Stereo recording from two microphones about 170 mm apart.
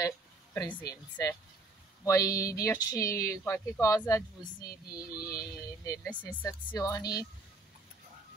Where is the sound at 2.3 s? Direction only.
20° left (ahead or behind).